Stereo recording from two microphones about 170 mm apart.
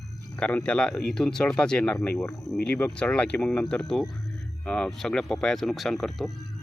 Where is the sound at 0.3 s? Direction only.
5° left (ahead or behind).